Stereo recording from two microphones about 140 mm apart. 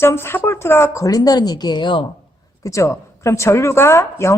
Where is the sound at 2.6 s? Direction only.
20° left (ahead or behind).